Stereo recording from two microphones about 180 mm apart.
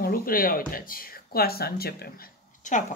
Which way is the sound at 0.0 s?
55° left (ahead or behind).